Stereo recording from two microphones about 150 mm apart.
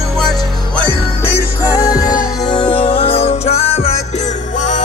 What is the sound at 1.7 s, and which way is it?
Music, 25° left (ahead or behind).